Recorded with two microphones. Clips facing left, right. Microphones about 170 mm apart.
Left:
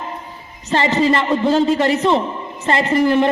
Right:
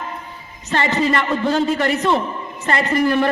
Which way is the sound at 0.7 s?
25° left (ahead or behind).